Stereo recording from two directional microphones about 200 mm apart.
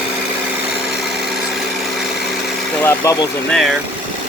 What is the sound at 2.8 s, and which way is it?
Vehicle, 15° left (ahead or behind).